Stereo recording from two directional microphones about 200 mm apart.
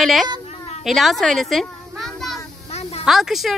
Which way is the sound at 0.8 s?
Centre (ahead or behind).